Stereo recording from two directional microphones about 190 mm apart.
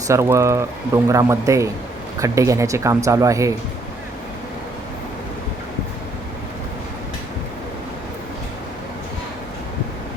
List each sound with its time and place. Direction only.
0.1 s speech: 15° right (ahead or behind)